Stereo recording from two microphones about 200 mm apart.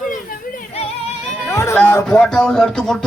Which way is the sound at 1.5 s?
15° left (ahead or behind).